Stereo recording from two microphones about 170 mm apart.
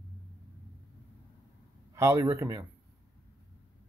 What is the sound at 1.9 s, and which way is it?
Speech, 15° right (ahead or behind).